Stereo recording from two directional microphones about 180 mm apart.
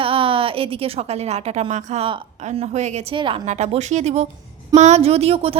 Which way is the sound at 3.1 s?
30° right (ahead or behind).